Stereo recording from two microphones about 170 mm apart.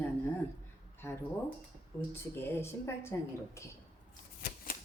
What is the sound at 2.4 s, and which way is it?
Speech, 15° left (ahead or behind).